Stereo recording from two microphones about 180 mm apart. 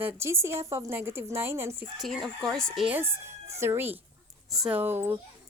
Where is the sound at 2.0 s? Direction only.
Centre (ahead or behind).